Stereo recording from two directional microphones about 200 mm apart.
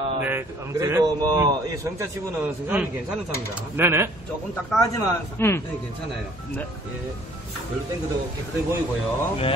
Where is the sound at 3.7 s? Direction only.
10° right (ahead or behind).